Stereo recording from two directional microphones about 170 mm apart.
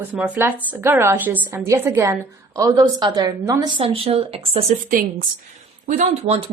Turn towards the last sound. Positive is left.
turn(degrees=-40)  # may be behind; listen again after turning